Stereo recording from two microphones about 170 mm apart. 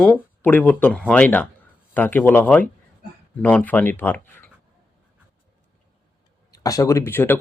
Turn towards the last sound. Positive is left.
turn(degrees=15)  # may be behind; listen again after turning